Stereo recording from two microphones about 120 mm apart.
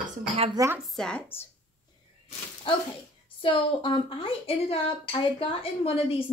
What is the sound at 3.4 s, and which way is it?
A woman's voice, 50° left (ahead or behind).